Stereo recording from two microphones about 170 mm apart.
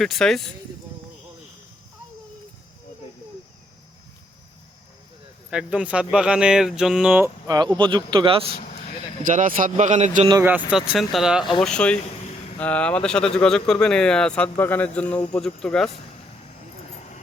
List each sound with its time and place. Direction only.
0.0 s speech: centre (ahead or behind)
5.5 s speech: 5° right (ahead or behind)
7.4 s speech: 20° right (ahead or behind)
8.5 s a sound: 40° left (ahead or behind)
9.2 s a man's voice: 50° right (ahead or behind)
10.4 s speech: 5° right (ahead or behind)
16.9 s a sound: 45° left (ahead or behind)